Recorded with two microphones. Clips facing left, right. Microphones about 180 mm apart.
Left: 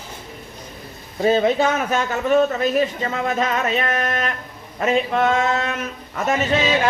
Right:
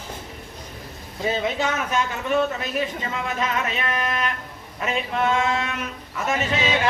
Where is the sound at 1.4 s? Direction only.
40° left (ahead or behind).